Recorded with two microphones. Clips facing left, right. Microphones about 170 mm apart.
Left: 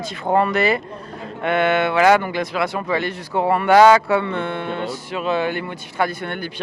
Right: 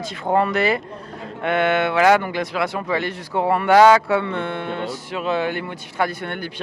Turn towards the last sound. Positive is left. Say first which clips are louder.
# left 1 dB
turn(degrees=10)  # may be behind; listen again after turning